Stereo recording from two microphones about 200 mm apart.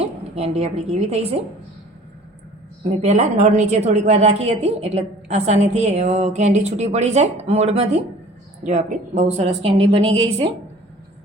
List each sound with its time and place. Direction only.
0.0 s a woman's voice: 30° right (ahead or behind)
3.0 s a woman's voice: 30° right (ahead or behind)